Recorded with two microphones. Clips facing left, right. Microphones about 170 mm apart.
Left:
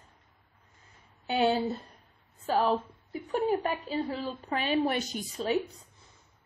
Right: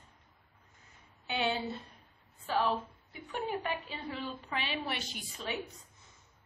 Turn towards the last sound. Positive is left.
turn(degrees=40)  # may be behind; listen again after turning